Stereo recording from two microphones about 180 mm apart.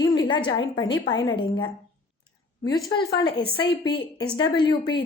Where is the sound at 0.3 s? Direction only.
25° left (ahead or behind).